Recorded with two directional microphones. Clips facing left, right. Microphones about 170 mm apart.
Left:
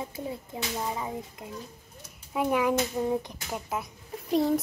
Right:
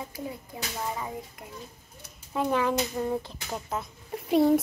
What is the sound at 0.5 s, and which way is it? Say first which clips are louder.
Speech: left 3 dB; 25° left (ahead or behind).